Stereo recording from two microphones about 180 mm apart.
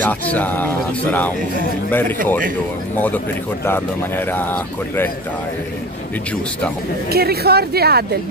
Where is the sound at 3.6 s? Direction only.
10° left (ahead or behind).